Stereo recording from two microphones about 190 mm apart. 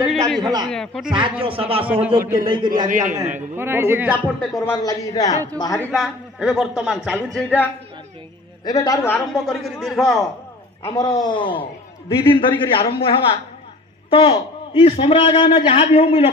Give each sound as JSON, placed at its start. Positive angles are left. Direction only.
{"t": 0.0, "sound": "a sound", "side_deg": 0}
{"t": 0.4, "sound": "a man's voice", "side_deg": -20}
{"t": 0.7, "sound": "speech", "side_deg": 0}
{"t": 1.4, "sound": "a man's voice", "side_deg": -30}
{"t": 1.9, "sound": "speech", "side_deg": -10}
{"t": 2.4, "sound": "a man's voice", "side_deg": -25}
{"t": 2.7, "sound": "a man's voice", "side_deg": -45}
{"t": 3.5, "sound": "speech", "side_deg": -10}
{"t": 4.6, "sound": "a man's voice", "side_deg": 20}
{"t": 5.9, "sound": "speech", "side_deg": -5}
{"t": 7.3, "sound": "a woman's voice", "side_deg": 10}
{"t": 8.6, "sound": "a woman's voice", "side_deg": 20}
{"t": 9.3, "sound": "speech", "side_deg": 0}
{"t": 10.8, "sound": "a man's voice", "side_deg": 20}